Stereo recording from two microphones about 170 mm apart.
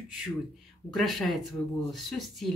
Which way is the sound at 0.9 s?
Centre (ahead or behind).